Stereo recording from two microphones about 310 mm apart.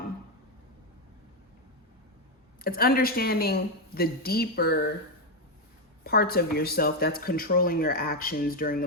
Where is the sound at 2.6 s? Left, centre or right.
Left.